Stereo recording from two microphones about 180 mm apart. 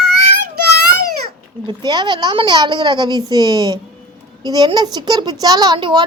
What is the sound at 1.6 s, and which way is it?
Speech, 25° right (ahead or behind).